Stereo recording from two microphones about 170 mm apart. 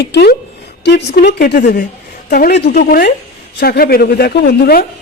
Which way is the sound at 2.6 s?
50° left (ahead or behind).